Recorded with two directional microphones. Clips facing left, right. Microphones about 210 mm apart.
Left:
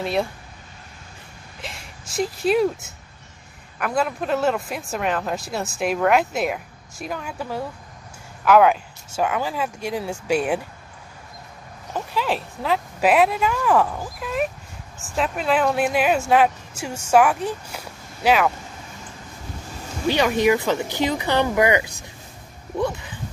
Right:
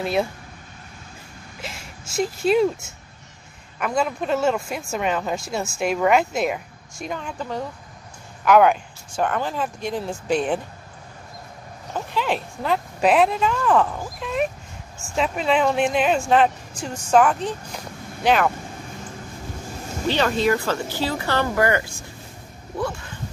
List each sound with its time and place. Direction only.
0.0 s speech: centre (ahead or behind)
1.6 s speech: centre (ahead or behind)
12.1 s speech: 5° left (ahead or behind)
20.1 s speech: 10° left (ahead or behind)